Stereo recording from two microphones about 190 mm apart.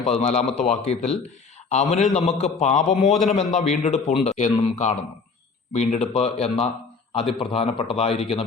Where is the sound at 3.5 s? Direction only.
35° left (ahead or behind).